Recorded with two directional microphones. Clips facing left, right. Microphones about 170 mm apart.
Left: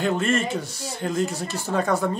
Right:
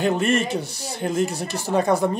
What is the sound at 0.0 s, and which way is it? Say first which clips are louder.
Speech: right 2 dB; 15° right (ahead or behind).